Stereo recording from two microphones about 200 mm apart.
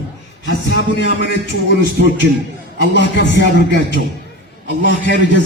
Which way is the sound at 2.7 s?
60° left (ahead or behind).